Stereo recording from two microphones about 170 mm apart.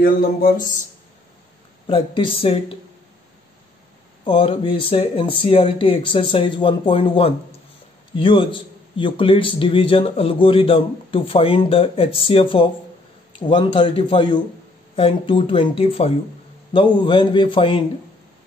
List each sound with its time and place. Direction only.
0.0 s speech: 60° left (ahead or behind)
1.9 s a man's voice: 30° left (ahead or behind)
4.2 s a man's voice: 30° left (ahead or behind)